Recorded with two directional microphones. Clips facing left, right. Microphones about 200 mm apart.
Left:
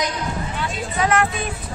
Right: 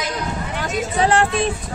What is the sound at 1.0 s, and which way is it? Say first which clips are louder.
Speech: right 3 dB; 30° right (ahead or behind).